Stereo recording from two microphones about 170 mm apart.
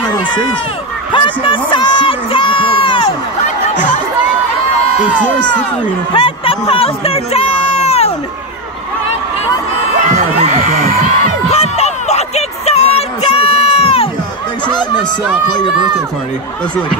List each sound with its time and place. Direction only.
1.1 s speech: 30° left (ahead or behind)
3.4 s a sound: 50° left (ahead or behind)
5.2 s speech: 10° left (ahead or behind)
6.1 s speech: 30° left (ahead or behind)
10.1 s heart sounds: 40° right (ahead or behind)
11.4 s a sound: 40° left (ahead or behind)